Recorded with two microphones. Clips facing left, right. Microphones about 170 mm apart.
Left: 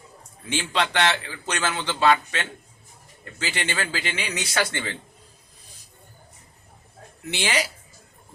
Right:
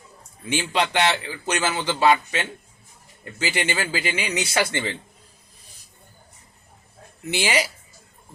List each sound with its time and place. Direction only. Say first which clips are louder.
0.5 s a man's voice: right 2 dB; 10° right (ahead or behind)
7.3 s a man's voice: right 3 dB; 10° right (ahead or behind)